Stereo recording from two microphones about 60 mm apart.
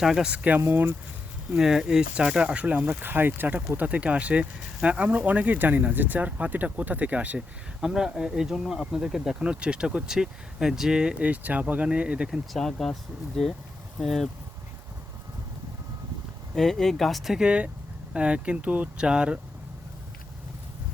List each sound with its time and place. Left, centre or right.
0.0 s speech: centre
0.6 s speech: right
1.5 s speech: centre; by 7.4 s right
7.8 s speech: centre
12.3 s speech: centre
16.6 s speech: centre
17.3 s speech: centre